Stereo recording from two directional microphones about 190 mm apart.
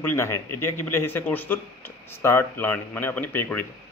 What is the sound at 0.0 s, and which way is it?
A man's voice, 15° left (ahead or behind).